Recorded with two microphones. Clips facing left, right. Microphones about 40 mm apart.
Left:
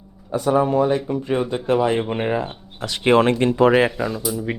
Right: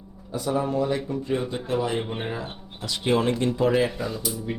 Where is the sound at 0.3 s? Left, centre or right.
Left.